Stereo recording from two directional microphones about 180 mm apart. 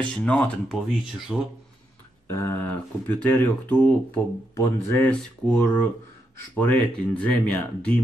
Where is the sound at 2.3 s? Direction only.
15° left (ahead or behind).